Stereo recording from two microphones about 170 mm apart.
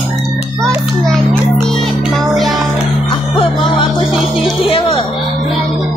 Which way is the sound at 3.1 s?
30° left (ahead or behind).